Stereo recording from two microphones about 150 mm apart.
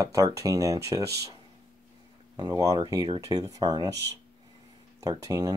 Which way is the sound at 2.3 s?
25° right (ahead or behind).